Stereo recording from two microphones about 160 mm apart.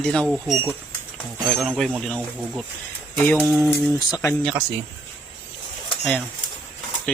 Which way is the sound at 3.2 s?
10° left (ahead or behind).